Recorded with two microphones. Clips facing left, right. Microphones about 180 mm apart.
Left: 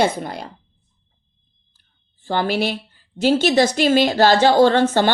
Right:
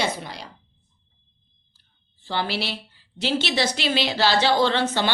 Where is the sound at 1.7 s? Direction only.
50° left (ahead or behind).